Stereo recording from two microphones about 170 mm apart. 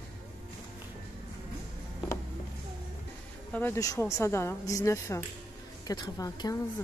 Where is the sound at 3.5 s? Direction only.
15° left (ahead or behind).